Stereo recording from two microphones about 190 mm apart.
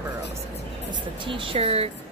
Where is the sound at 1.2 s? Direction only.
25° right (ahead or behind).